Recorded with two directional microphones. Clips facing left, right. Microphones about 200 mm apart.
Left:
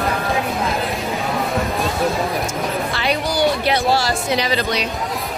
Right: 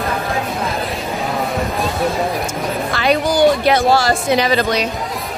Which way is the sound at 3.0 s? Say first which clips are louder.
Right 6 dB; 50° right (ahead or behind).